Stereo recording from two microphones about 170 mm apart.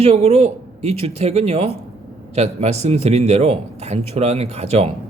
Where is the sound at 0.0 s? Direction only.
40° right (ahead or behind).